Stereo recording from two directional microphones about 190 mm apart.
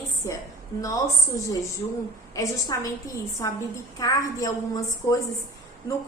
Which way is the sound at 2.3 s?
15° left (ahead or behind).